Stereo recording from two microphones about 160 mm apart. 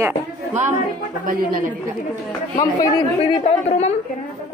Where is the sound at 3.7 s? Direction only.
45° left (ahead or behind).